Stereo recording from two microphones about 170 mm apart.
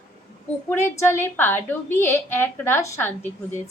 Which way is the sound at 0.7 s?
15° left (ahead or behind).